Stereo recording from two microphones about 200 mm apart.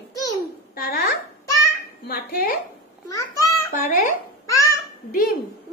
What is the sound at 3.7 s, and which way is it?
Babbling, 40° left (ahead or behind).